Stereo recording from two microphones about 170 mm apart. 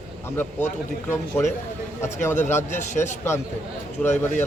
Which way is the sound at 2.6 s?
45° left (ahead or behind).